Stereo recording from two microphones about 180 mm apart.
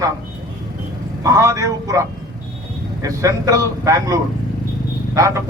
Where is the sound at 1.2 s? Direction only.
20° right (ahead or behind).